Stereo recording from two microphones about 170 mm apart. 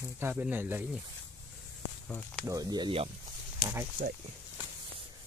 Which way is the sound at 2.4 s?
20° right (ahead or behind).